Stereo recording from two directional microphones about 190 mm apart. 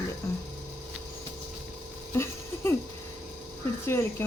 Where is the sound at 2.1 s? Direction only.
15° left (ahead or behind).